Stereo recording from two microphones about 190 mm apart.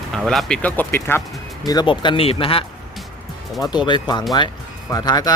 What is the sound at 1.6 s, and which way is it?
Speech, 25° left (ahead or behind).